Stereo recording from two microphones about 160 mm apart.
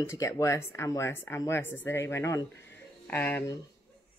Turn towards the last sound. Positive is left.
turn(degrees=10)  # may be behind; listen again after turning